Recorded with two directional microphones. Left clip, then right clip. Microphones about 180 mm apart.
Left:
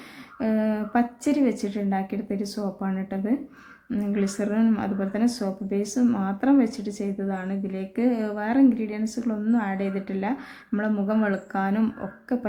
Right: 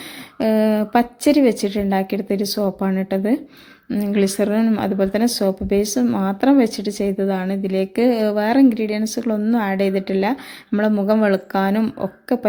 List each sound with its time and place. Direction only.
0.3 s speech: 35° right (ahead or behind)